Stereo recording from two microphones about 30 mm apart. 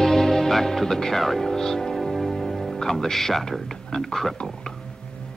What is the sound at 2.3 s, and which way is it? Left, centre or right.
Speech, centre.